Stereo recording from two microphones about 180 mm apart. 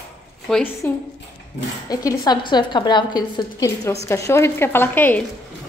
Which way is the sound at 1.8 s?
20° left (ahead or behind).